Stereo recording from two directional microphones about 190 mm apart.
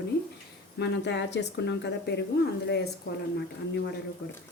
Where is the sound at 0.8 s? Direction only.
65° left (ahead or behind).